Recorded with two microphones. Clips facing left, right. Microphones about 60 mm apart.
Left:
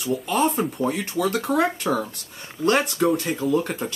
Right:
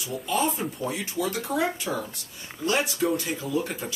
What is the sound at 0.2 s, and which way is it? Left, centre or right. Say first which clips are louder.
Speech: left 2 dB; left.